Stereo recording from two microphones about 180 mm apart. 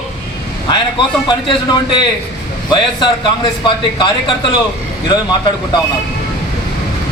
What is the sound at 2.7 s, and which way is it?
A man's voice, 25° left (ahead or behind).